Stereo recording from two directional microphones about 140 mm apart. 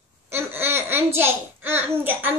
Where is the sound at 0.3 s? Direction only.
15° right (ahead or behind).